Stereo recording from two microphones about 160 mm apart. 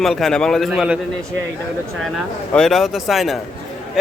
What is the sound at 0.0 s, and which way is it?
Speech, centre (ahead or behind).